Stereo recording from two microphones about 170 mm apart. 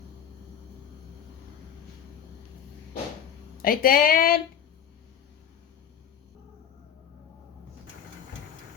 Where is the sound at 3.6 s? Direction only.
60° left (ahead or behind).